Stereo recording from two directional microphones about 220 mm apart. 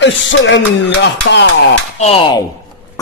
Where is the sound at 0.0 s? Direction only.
55° left (ahead or behind).